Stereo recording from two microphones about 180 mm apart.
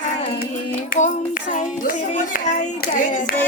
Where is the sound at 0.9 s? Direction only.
45° left (ahead or behind).